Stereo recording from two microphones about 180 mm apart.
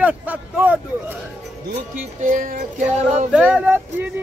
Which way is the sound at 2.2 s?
45° right (ahead or behind).